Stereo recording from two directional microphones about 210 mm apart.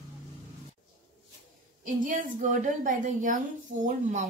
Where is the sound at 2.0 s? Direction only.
40° right (ahead or behind).